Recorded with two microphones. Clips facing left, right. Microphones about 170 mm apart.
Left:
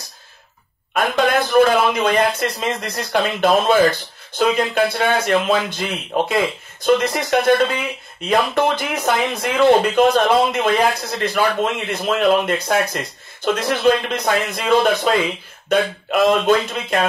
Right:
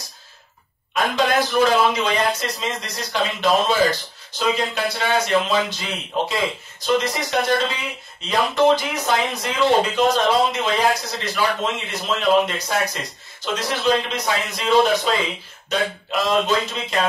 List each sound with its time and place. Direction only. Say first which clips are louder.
0.9 s a man's voice: left 2 dB; 55° left (ahead or behind)